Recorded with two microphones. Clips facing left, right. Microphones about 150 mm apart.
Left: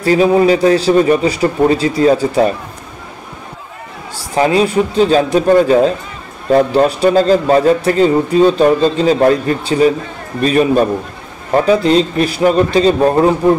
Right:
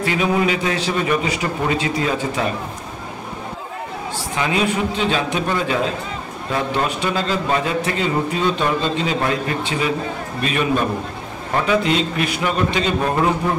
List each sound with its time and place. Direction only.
0.0 s a man's voice: 35° left (ahead or behind)
4.4 s a man's voice: 35° left (ahead or behind)